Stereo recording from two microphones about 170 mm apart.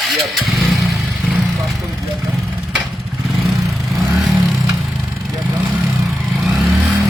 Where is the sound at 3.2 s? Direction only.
Centre (ahead or behind).